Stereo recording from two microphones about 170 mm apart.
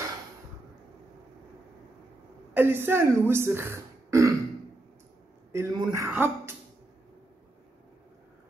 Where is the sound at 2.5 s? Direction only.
15° right (ahead or behind).